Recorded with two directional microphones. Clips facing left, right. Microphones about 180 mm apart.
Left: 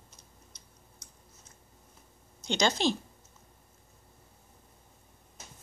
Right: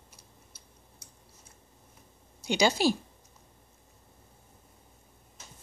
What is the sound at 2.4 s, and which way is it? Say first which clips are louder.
Speech: right 3 dB; 10° right (ahead or behind).